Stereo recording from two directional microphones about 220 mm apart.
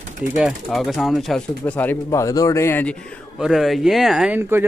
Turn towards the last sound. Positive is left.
turn(degrees=-5)  # may be behind; listen again after turning